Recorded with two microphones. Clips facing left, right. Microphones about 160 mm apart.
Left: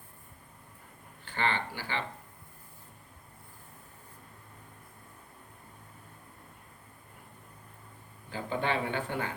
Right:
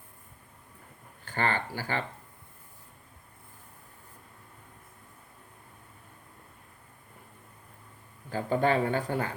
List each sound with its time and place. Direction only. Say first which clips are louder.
1.2 s speech: right 2 dB; 45° right (ahead or behind)
8.3 s speech: right 6 dB; 45° right (ahead or behind)